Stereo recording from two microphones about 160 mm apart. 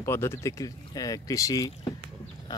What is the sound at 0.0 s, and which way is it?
Speech, 15° left (ahead or behind).